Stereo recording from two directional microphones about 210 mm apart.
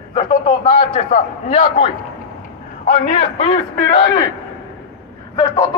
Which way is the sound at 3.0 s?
30° left (ahead or behind).